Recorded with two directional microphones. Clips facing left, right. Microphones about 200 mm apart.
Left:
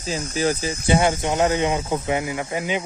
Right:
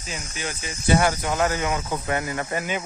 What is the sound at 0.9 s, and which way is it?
Speech, 25° left (ahead or behind).